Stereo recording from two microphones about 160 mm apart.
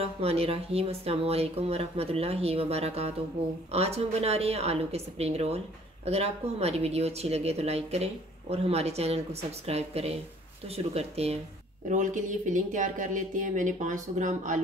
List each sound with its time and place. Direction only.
0.0 s speech: 40° right (ahead or behind)